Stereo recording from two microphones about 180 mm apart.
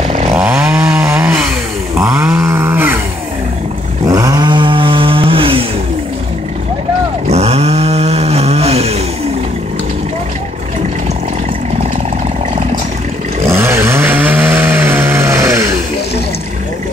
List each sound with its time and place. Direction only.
0.4 s chainsaw: 10° right (ahead or behind)
2.0 s a sound: 15° right (ahead or behind)
4.1 s chainsaw: 20° right (ahead or behind)
7.2 s chainsaw: 35° right (ahead or behind)
13.5 s chainsaw: 15° right (ahead or behind)